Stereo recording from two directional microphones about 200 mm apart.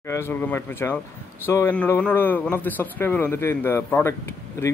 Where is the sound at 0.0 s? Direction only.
10° left (ahead or behind).